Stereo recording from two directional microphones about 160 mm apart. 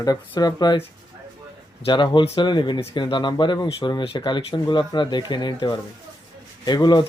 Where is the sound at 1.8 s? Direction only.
30° left (ahead or behind).